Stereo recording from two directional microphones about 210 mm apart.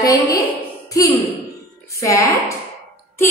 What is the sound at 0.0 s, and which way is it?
Speech, 15° left (ahead or behind).